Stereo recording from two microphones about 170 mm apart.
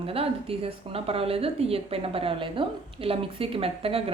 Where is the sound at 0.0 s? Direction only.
35° right (ahead or behind).